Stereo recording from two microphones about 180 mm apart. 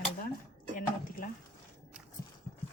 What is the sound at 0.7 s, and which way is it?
Speech, 50° left (ahead or behind).